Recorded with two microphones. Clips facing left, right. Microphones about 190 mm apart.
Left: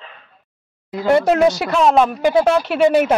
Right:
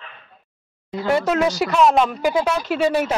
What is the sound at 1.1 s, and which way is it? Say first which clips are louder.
Speech: left 5 dB; 65° left (ahead or behind).